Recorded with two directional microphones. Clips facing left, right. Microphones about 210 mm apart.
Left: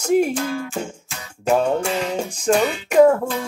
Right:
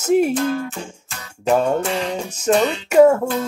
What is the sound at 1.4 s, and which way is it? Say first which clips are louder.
Music: right 1 dB; centre (ahead or behind).